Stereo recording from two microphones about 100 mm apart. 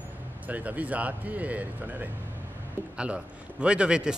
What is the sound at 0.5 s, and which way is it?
A man's voice, 15° right (ahead or behind).